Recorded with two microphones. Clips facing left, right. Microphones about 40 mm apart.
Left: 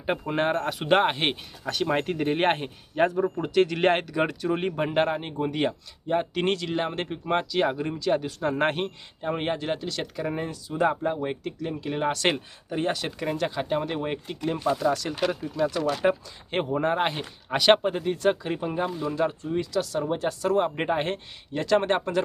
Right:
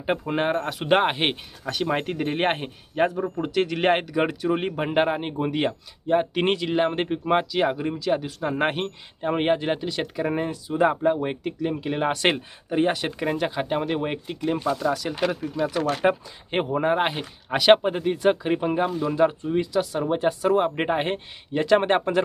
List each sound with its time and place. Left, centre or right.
0.0 s speech: centre
9.2 s speech: right
14.7 s speech: centre
15.0 s speech: centre